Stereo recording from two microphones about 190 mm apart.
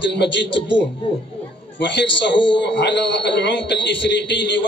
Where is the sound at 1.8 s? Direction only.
65° left (ahead or behind).